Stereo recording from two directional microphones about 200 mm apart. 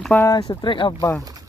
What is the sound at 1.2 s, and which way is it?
Boat, 20° right (ahead or behind).